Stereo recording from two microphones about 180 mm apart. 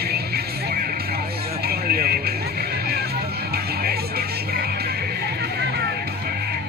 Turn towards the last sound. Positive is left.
turn(degrees=-60)  # may be behind; listen again after turning